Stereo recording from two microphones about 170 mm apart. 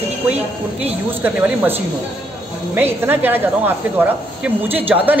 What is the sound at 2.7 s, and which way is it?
Speech, 10° right (ahead or behind).